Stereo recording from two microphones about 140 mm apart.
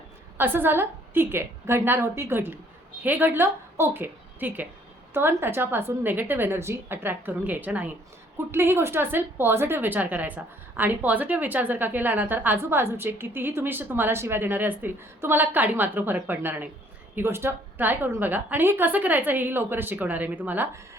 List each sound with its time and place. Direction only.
0.3 s a woman's voice: 15° right (ahead or behind)